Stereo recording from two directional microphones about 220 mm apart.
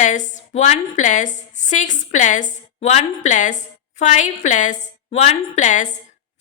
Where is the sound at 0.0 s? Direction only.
35° left (ahead or behind).